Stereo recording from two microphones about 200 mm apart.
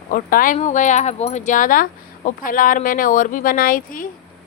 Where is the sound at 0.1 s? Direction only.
45° left (ahead or behind).